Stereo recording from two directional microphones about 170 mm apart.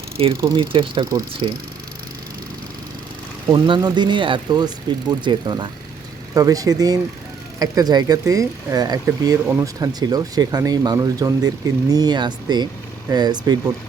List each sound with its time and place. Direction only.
0.2 s speech: 30° right (ahead or behind)
3.5 s speech: 25° right (ahead or behind)